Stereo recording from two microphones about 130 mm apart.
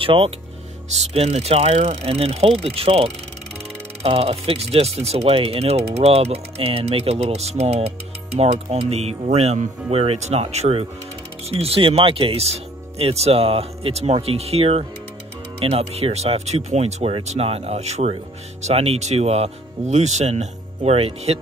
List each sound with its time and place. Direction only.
0.0 s speech: 45° right (ahead or behind)
0.8 s speech: 55° right (ahead or behind)